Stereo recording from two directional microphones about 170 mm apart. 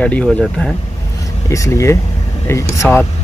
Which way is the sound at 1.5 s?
20° left (ahead or behind).